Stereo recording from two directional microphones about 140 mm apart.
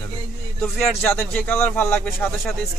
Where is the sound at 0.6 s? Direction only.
10° left (ahead or behind).